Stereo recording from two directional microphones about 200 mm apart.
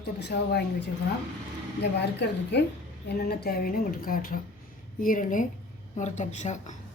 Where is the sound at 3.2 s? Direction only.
50° left (ahead or behind).